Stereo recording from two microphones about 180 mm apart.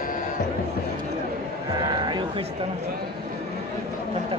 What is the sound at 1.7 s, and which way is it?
Speech, 25° right (ahead or behind).